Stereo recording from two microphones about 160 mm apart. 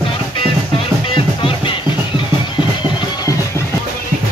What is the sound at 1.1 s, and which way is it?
Music, 35° left (ahead or behind).